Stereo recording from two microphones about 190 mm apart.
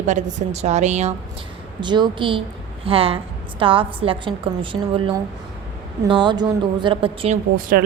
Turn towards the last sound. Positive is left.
turn(degrees=-45)  # may be behind; listen again after turning